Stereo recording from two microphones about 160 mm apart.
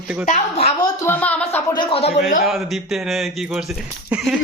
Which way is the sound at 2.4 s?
Centre (ahead or behind).